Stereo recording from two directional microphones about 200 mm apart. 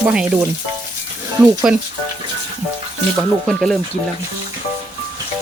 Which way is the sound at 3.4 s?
Centre (ahead or behind).